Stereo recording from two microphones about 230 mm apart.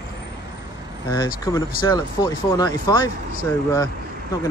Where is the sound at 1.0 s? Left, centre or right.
Centre.